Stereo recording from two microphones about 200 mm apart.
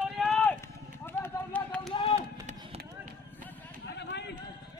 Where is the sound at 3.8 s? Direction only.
60° left (ahead or behind).